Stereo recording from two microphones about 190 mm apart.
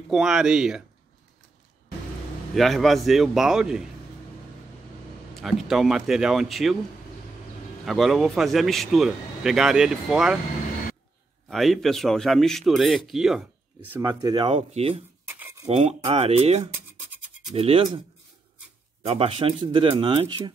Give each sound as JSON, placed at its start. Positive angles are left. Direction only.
{"t": 0.1, "sound": "speech", "side_deg": 0}
{"t": 2.5, "sound": "speech", "side_deg": 0}
{"t": 5.4, "sound": "speech", "side_deg": 0}
{"t": 7.8, "sound": "speech", "side_deg": 0}
{"t": 11.4, "sound": "speech", "side_deg": 0}
{"t": 14.0, "sound": "speech", "side_deg": -20}
{"t": 15.2, "sound": "a sound", "side_deg": -10}
{"t": 15.7, "sound": "speech", "side_deg": -30}
{"t": 19.0, "sound": "speech", "side_deg": -30}